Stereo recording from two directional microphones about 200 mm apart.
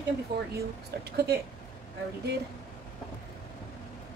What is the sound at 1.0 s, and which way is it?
Speech, 55° right (ahead or behind).